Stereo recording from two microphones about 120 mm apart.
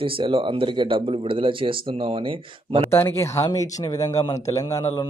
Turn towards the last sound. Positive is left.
turn(degrees=25)  # may be behind; listen again after turning